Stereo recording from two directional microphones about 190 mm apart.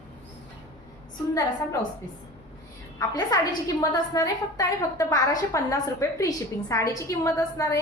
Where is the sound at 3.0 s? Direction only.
20° left (ahead or behind).